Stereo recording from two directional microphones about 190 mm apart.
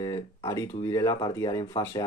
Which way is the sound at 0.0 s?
15° left (ahead or behind).